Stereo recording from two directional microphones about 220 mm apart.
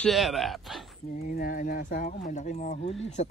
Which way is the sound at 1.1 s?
40° left (ahead or behind).